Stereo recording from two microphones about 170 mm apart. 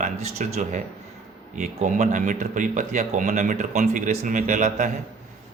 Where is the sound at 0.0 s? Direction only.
40° right (ahead or behind).